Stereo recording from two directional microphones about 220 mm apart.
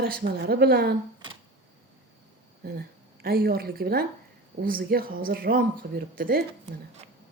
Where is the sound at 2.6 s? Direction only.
45° right (ahead or behind).